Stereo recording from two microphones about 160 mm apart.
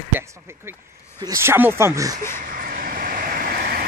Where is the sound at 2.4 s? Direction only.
60° right (ahead or behind).